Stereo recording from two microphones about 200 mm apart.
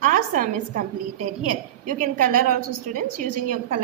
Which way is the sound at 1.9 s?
40° right (ahead or behind).